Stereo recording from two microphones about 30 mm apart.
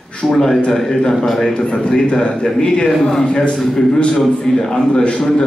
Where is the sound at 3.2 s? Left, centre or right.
Left.